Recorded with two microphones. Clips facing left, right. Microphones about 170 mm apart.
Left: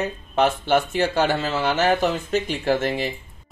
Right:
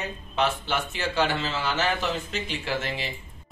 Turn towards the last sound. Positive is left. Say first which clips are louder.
# left 8 dB
turn(degrees=50)  # may be behind; listen again after turning